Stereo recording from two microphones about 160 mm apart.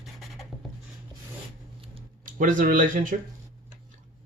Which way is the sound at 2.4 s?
55° right (ahead or behind).